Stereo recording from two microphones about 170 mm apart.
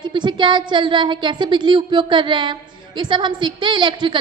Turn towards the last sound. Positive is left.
turn(degrees=-25)  # may be behind; listen again after turning